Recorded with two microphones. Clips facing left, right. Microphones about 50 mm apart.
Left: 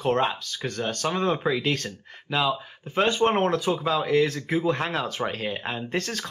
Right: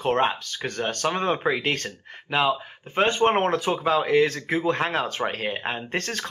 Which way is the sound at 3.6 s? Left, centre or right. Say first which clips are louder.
Right 2 dB; right.